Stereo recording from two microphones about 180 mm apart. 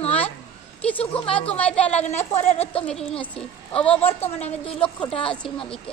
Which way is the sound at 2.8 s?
5° left (ahead or behind).